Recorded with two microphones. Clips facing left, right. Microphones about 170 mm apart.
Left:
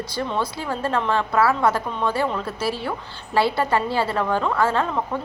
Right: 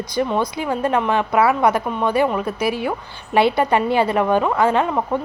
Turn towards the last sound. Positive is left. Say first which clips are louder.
# right 4 dB
turn(degrees=-20)  # may be behind; listen again after turning